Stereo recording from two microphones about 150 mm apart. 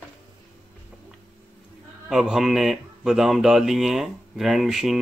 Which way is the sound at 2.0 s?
Centre (ahead or behind).